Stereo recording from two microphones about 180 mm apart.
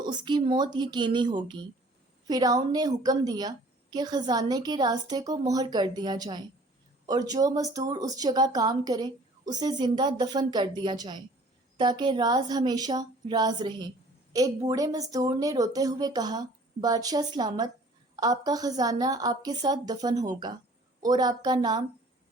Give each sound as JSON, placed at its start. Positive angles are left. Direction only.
{"t": 0.0, "sound": "speech", "side_deg": -25}